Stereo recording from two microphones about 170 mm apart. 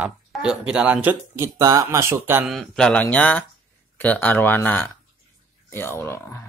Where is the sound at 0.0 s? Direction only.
5° right (ahead or behind).